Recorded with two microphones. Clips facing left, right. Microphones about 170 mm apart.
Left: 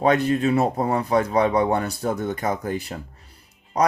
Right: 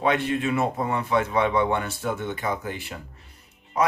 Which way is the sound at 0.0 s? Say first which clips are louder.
Left 4 dB; 40° left (ahead or behind).